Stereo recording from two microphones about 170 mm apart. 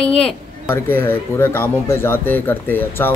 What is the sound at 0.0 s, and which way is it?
Speech, 5° left (ahead or behind).